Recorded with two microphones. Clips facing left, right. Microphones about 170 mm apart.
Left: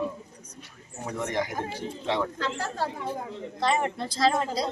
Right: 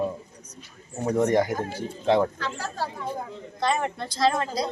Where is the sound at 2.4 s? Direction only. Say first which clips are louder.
Left 1 dB; 20° left (ahead or behind).